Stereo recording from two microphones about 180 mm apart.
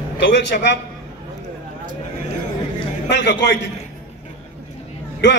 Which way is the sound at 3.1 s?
75° left (ahead or behind).